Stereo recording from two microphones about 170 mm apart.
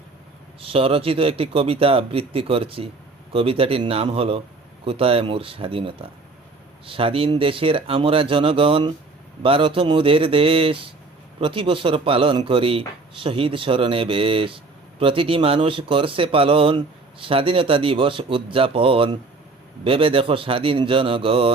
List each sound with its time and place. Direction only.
0.6 s speech: 35° right (ahead or behind)